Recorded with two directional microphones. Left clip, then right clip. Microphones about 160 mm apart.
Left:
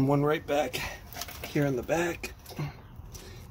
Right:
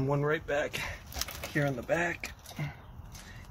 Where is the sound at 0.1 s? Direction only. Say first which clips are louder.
Left 1 dB; 40° left (ahead or behind).